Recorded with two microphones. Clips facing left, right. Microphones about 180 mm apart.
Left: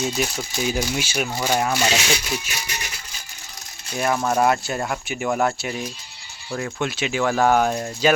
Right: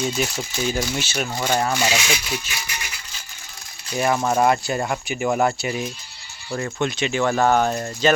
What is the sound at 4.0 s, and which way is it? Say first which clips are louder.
Speech: right 1 dB; 5° right (ahead or behind).